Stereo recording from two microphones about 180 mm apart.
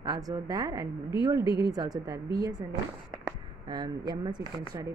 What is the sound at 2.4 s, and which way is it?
Speech, 20° right (ahead or behind).